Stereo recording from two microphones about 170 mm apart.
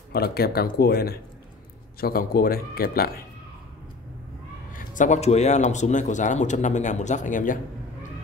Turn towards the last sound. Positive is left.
turn(degrees=50)  # may be behind; listen again after turning